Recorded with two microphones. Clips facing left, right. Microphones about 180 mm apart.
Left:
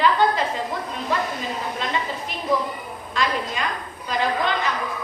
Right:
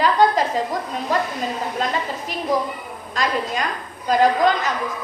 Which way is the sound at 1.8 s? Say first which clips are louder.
Right 5 dB; 40° right (ahead or behind).